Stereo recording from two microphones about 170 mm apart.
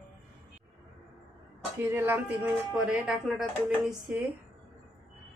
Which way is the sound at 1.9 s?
10° right (ahead or behind).